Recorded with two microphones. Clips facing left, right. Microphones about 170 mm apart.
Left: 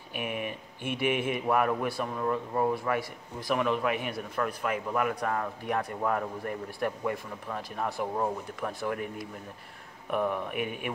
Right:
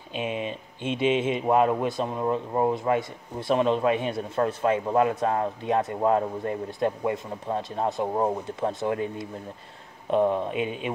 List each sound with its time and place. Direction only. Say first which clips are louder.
0.1 s speech: right 4 dB; 20° right (ahead or behind)